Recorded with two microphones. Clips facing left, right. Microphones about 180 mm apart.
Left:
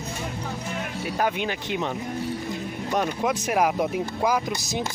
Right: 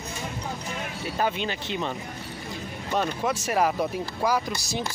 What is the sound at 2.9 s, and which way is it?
Speech, 15° left (ahead or behind).